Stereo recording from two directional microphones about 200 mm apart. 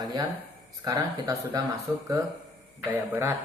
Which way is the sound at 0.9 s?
20° right (ahead or behind).